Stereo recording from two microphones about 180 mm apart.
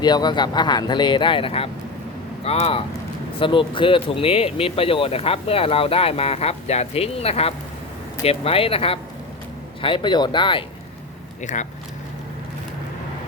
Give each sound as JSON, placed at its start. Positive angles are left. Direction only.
{"t": 0.0, "sound": "speech", "side_deg": 25}